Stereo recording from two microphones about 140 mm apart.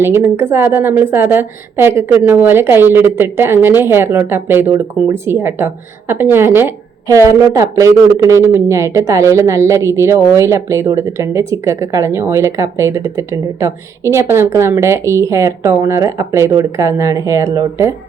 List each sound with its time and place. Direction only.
0.0 s a woman's voice: 15° right (ahead or behind)